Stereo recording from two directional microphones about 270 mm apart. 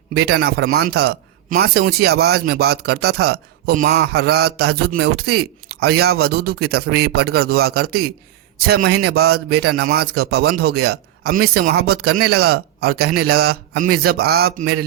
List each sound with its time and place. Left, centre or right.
0.1 s a man's voice: right